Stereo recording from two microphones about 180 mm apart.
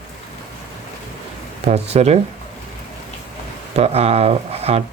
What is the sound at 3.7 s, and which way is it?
Speech, 35° right (ahead or behind).